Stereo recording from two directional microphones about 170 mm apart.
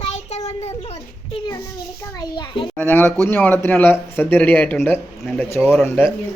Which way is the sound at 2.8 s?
10° left (ahead or behind).